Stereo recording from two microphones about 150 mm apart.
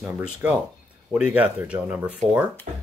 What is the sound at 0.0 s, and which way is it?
Speech, 10° right (ahead or behind).